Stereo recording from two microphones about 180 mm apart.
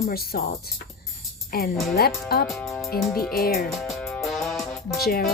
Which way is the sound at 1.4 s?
55° left (ahead or behind).